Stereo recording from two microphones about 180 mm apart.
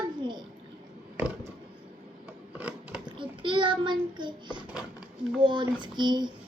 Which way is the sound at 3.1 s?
25° right (ahead or behind).